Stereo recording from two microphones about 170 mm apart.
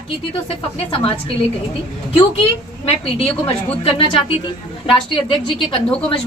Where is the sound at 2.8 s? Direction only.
35° left (ahead or behind).